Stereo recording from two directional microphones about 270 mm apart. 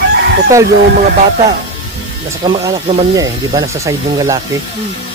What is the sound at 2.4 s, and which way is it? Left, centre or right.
Speech, centre.